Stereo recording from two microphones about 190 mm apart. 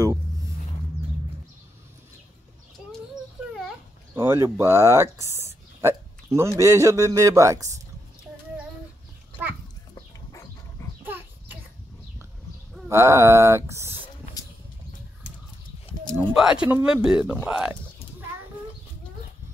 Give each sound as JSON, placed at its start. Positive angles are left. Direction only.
{"t": 4.1, "sound": "a man's voice", "side_deg": -10}
{"t": 9.9, "sound": "dog", "side_deg": 15}
{"t": 11.1, "sound": "a sound", "side_deg": -10}
{"t": 12.8, "sound": "a man's voice", "side_deg": -15}
{"t": 16.1, "sound": "speech", "side_deg": -5}